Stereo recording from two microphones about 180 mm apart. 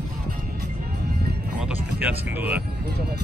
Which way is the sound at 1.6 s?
10° right (ahead or behind).